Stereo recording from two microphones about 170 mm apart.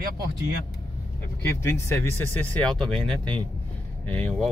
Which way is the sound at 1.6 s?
15° left (ahead or behind).